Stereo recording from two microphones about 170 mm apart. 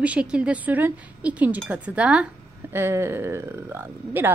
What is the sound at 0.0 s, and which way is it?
A woman's voice, 5° right (ahead or behind).